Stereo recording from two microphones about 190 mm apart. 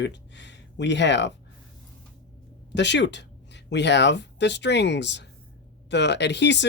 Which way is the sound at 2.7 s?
65° left (ahead or behind).